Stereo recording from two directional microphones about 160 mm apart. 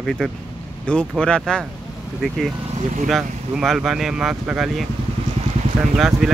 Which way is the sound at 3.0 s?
Centre (ahead or behind).